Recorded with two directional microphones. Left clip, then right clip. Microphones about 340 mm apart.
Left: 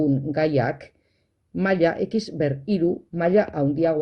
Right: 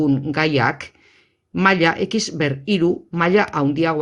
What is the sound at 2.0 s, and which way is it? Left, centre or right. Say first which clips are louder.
Speech: right 4 dB; right.